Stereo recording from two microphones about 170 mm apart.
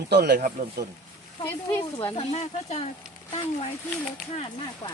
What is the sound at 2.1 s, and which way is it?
Speech, 40° left (ahead or behind).